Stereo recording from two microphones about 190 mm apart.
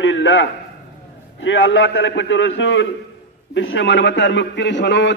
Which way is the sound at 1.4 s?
75° left (ahead or behind).